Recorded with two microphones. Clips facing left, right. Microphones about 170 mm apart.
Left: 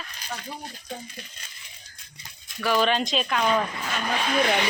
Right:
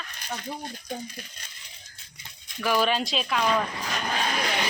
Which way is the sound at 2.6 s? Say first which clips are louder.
Left 1 dB; 10° right (ahead or behind).